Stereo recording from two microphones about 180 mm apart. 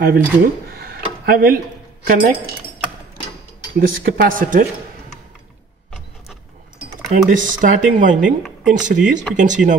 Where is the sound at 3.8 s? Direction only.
55° right (ahead or behind).